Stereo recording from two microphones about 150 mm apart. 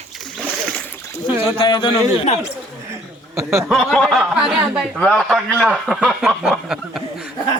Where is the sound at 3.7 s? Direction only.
Centre (ahead or behind).